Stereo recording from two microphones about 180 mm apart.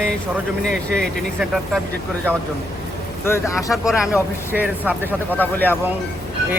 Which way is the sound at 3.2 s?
15° left (ahead or behind).